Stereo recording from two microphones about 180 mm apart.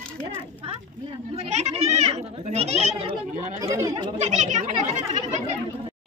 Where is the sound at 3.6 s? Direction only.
20° right (ahead or behind).